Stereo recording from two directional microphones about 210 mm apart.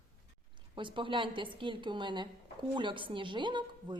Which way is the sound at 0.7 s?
25° right (ahead or behind).